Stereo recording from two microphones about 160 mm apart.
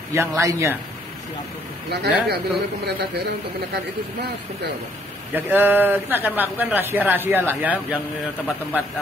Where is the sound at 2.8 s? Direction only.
90° right.